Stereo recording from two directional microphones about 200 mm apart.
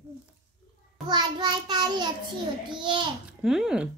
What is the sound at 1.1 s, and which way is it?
Child singing, 20° right (ahead or behind).